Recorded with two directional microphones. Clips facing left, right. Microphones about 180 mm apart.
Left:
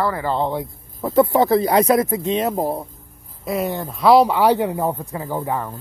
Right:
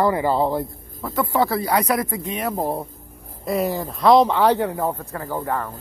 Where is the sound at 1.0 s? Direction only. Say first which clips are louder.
Left 6 dB; 20° left (ahead or behind).